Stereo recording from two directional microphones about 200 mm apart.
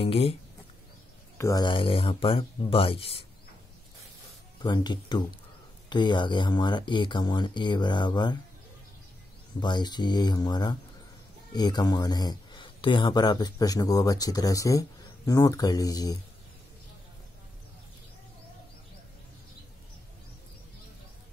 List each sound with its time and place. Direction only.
0.0 s speech: 30° left (ahead or behind)
1.4 s speech: 20° left (ahead or behind)
4.6 s speech: 20° left (ahead or behind)
9.6 s speech: 20° left (ahead or behind)